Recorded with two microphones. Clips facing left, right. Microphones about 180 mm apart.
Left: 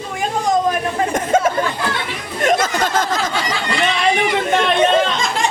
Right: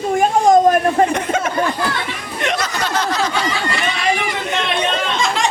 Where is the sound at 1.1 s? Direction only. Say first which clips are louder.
Left 3 dB; 45° left (ahead or behind).